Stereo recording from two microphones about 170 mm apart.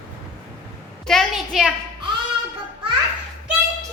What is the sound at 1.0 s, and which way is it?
Speech, centre (ahead or behind).